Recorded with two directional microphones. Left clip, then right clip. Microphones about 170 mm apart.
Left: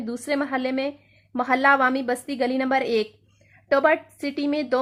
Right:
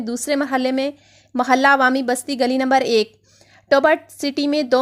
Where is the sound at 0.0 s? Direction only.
30° right (ahead or behind).